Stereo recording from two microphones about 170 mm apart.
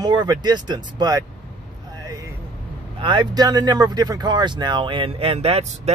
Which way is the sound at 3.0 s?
25° right (ahead or behind).